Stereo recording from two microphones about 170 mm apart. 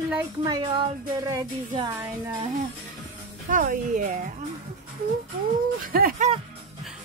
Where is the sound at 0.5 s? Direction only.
30° right (ahead or behind).